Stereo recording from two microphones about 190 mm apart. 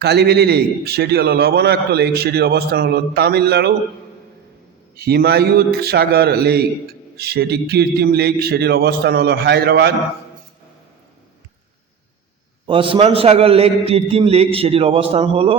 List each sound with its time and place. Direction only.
0.0 s a man's voice: 60° right (ahead or behind)
4.9 s a man's voice: 55° right (ahead or behind)
12.6 s a man's voice: 25° right (ahead or behind)